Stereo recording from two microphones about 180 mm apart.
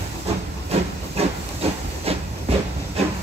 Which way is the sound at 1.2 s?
35° right (ahead or behind).